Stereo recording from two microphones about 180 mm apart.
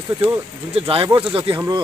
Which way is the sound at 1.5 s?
15° right (ahead or behind).